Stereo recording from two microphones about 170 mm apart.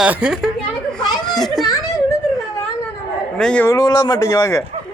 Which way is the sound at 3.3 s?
5° left (ahead or behind).